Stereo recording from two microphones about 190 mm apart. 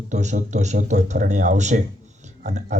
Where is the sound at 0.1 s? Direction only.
40° right (ahead or behind).